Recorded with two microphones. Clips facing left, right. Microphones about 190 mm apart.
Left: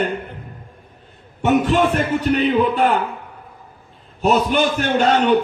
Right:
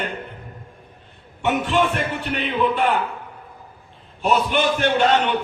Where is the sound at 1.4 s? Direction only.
40° left (ahead or behind).